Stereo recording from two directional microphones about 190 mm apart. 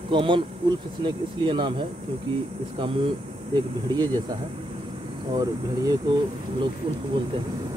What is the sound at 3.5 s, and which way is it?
Speech, 20° right (ahead or behind).